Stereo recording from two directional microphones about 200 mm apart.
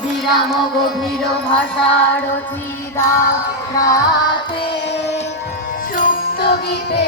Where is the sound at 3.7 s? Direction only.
15° left (ahead or behind).